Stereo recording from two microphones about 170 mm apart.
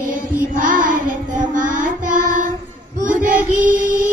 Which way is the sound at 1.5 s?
50° right (ahead or behind).